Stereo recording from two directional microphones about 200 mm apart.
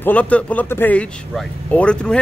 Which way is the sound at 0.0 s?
5° left (ahead or behind).